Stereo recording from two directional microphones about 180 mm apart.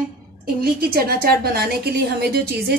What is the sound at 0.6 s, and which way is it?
A woman's voice, 55° right (ahead or behind).